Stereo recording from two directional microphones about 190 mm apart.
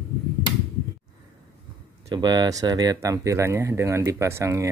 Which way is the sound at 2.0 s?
20° right (ahead or behind).